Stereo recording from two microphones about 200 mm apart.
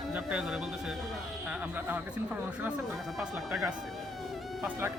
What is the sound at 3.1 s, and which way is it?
Speech, centre (ahead or behind).